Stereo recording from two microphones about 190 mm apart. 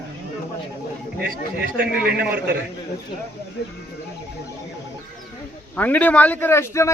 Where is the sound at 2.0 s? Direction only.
55° right (ahead or behind).